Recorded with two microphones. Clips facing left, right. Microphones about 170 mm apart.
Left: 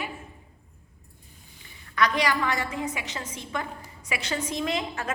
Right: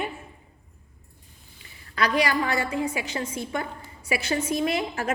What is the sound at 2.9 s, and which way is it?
A woman's voice, 30° right (ahead or behind).